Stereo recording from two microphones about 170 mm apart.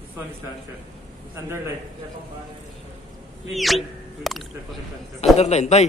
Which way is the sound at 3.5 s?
Centre (ahead or behind).